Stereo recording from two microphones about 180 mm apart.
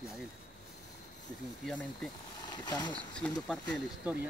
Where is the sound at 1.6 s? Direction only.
5° left (ahead or behind).